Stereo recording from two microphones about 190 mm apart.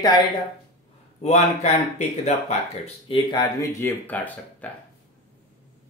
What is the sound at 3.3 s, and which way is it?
Speech, 20° left (ahead or behind).